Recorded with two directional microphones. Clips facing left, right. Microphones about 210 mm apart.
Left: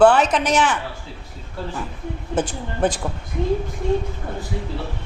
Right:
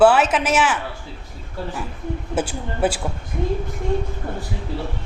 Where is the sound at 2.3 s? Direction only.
10° right (ahead or behind).